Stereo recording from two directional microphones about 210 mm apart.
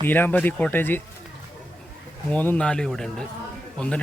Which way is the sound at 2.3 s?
5° left (ahead or behind).